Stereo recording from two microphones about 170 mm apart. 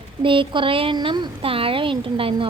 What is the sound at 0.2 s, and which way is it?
A woman's voice, 30° right (ahead or behind).